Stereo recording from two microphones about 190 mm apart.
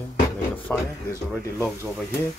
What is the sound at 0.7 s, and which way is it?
Speech, 10° left (ahead or behind).